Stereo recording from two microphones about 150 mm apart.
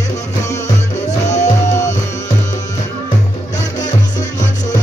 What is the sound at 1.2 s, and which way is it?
Music, 50° left (ahead or behind).